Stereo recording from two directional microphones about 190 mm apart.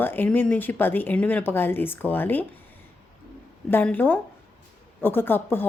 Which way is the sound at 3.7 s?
10° left (ahead or behind).